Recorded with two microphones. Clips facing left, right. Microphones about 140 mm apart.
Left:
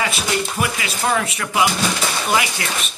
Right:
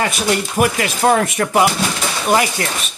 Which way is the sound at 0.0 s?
50° right (ahead or behind).